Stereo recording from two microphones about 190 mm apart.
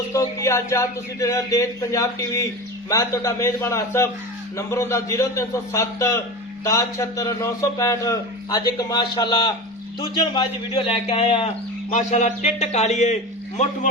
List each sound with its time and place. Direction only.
0.1 s a man's voice: 15° left (ahead or behind); by 13.1 s 35° left (ahead or behind)